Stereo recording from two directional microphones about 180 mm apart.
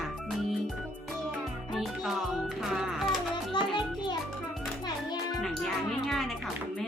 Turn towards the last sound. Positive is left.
turn(degrees=0)  # may be behind; listen again after turning